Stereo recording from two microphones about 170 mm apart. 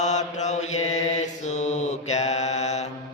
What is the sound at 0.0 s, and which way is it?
Mantra, 45° left (ahead or behind).